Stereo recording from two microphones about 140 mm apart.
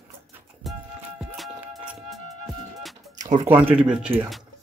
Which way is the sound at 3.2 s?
60° right (ahead or behind).